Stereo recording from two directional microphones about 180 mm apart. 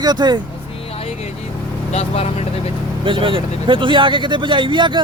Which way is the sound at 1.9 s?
35° left (ahead or behind).